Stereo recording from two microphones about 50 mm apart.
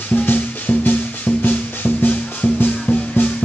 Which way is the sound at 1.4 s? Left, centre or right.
Left.